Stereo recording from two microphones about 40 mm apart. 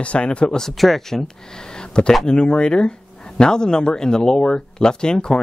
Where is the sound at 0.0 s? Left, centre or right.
Left.